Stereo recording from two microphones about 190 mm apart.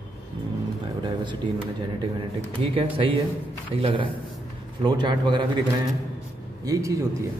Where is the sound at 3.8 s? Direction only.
25° right (ahead or behind).